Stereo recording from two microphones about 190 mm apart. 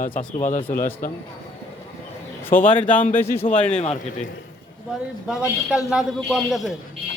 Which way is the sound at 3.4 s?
40° left (ahead or behind).